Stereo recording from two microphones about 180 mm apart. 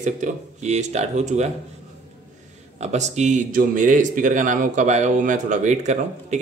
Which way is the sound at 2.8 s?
40° right (ahead or behind).